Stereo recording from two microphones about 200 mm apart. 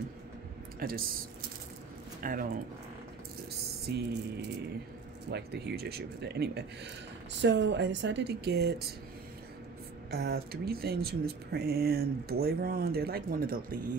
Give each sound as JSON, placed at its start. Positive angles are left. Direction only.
{"t": 0.7, "sound": "speech", "side_deg": -45}
{"t": 2.2, "sound": "speech", "side_deg": -40}
{"t": 3.9, "sound": "speech", "side_deg": -60}
{"t": 10.1, "sound": "speech", "side_deg": -50}